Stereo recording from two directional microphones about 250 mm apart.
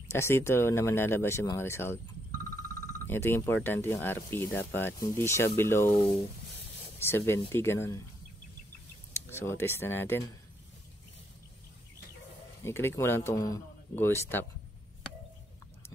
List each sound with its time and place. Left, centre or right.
0.1 s speech: centre
3.1 s speech: centre
9.1 s speech: centre
12.6 s speech: centre